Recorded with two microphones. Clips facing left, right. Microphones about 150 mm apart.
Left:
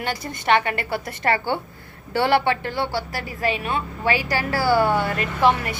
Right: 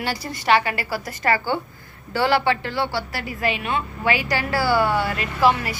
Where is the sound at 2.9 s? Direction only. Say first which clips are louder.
Even; 45° left (ahead or behind).